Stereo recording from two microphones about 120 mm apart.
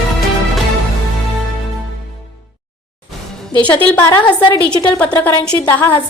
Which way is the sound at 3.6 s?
10° left (ahead or behind).